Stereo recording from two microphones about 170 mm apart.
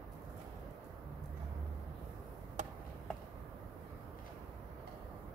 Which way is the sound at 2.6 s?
45° right (ahead or behind).